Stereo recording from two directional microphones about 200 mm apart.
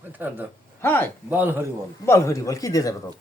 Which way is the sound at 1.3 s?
10° right (ahead or behind).